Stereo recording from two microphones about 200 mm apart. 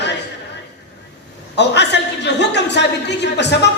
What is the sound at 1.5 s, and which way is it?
A woman's voice, 60° left (ahead or behind).